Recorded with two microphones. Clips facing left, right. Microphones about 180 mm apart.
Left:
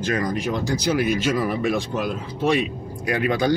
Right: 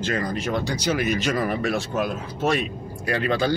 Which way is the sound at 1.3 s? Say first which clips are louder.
Left 1 dB; 50° right (ahead or behind).